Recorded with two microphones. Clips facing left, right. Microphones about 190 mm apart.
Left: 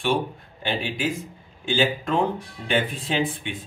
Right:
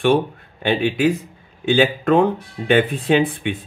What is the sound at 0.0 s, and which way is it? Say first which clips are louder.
Speech: right 7 dB; 60° right (ahead or behind).